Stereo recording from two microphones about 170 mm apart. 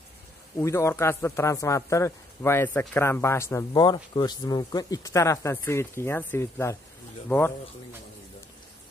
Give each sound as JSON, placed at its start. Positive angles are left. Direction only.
{"t": 0.6, "sound": "a man's voice", "side_deg": 15}